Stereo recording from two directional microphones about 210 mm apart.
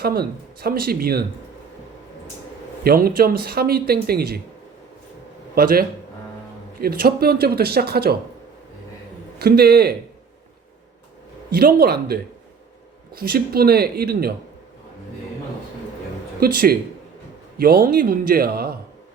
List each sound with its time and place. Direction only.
0.0 s speech: 50° right (ahead or behind)
2.8 s speech: 45° right (ahead or behind)
5.5 s speech: 45° right (ahead or behind)
6.8 s speech: 45° right (ahead or behind)
9.4 s speech: 50° right (ahead or behind)
11.5 s speech: 45° right (ahead or behind)
16.4 s speech: 45° right (ahead or behind)